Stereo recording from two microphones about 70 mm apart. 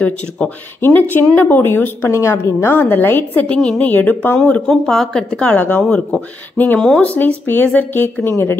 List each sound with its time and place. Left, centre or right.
0.4 s speech: centre
0.7 s a woman's voice: left
2.7 s speech: left
4.5 s speech: centre; by 8.5 s left